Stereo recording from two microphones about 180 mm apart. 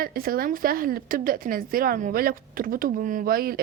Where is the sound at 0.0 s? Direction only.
55° right (ahead or behind).